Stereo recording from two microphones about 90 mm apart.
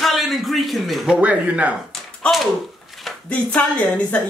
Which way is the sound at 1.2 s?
15° right (ahead or behind).